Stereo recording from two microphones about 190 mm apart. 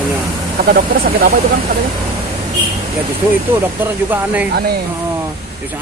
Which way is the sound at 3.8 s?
10° right (ahead or behind).